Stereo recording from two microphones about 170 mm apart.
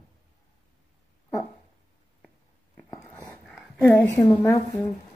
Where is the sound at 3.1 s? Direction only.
5° left (ahead or behind).